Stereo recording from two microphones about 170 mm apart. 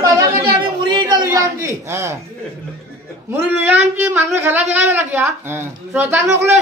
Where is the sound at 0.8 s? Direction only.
25° right (ahead or behind).